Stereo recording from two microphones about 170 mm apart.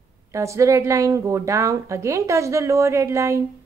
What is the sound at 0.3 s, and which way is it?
Speech, 15° right (ahead or behind).